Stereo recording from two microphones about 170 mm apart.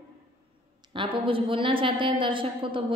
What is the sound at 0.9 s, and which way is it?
A woman's voice, 30° right (ahead or behind).